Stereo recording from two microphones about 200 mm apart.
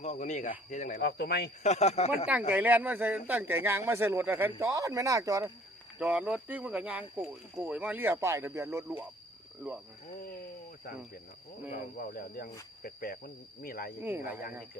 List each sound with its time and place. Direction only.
0.0 s speech: 35° left (ahead or behind)
1.0 s speech: 55° left (ahead or behind)
1.6 s speech: 35° left (ahead or behind)
2.5 s speech: 10° right (ahead or behind)
6.0 s speech: 5° right (ahead or behind)
11.7 s speech: 45° left (ahead or behind)